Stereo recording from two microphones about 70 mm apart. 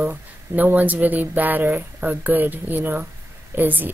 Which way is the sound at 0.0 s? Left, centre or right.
Right.